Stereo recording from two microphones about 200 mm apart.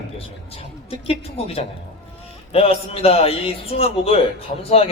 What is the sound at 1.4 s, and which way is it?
A man's voice, 30° left (ahead or behind).